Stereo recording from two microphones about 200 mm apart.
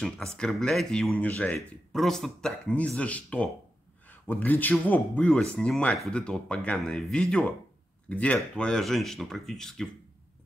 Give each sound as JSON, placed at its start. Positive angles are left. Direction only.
{"t": 0.0, "sound": "speech", "side_deg": 5}